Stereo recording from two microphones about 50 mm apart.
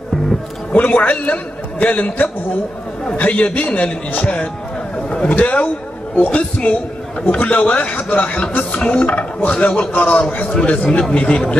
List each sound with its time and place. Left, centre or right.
0.7 s a man's voice: left
4.9 s a sound: centre
5.3 s a man's voice: left